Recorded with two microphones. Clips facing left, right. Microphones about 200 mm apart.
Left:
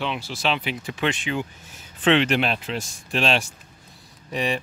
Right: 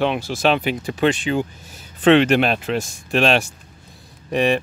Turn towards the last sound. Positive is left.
turn(degrees=-60)  # may be behind; listen again after turning